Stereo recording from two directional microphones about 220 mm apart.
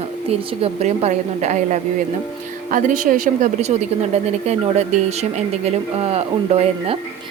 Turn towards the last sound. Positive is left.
turn(degrees=-25)  # may be behind; listen again after turning